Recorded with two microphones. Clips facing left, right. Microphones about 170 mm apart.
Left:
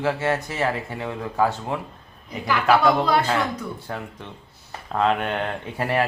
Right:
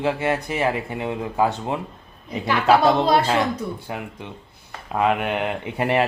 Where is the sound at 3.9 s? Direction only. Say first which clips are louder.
Right 1 dB; 15° right (ahead or behind).